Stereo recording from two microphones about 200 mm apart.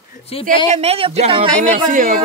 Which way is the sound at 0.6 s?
30° right (ahead or behind).